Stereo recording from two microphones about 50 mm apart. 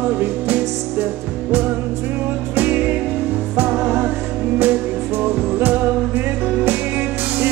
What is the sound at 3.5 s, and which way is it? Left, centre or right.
Music, right.